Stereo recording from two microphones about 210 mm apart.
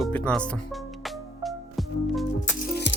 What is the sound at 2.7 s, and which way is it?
Music, 55° left (ahead or behind).